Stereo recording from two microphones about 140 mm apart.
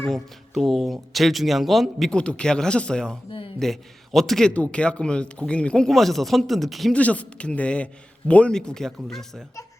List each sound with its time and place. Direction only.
0.0 s speech: centre (ahead or behind)